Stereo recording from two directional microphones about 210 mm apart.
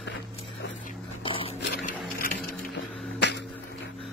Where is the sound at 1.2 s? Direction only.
25° left (ahead or behind).